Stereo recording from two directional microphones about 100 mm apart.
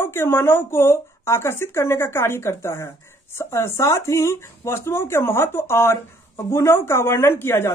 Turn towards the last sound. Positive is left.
turn(degrees=25)  # may be behind; listen again after turning